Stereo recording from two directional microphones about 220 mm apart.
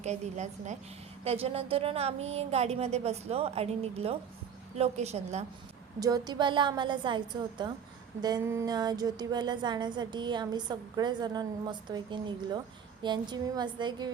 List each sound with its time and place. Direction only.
0.0 s a woman's voice: 30° right (ahead or behind)
6.0 s speech: 15° right (ahead or behind)